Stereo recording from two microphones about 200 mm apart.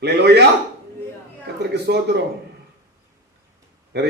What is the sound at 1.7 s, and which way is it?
Speech, 55° right (ahead or behind).